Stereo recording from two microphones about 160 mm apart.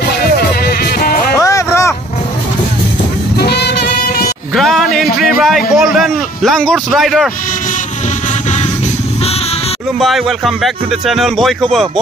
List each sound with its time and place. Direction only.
0.7 s music: 70° left (ahead or behind)
1.4 s a sound: 20° left (ahead or behind)
3.3 s music: 90° left
4.6 s a sound: centre (ahead or behind)
5.8 s a man's voice: centre (ahead or behind)
9.9 s speech: centre (ahead or behind)